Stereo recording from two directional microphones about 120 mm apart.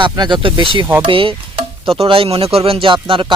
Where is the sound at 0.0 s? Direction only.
40° right (ahead or behind).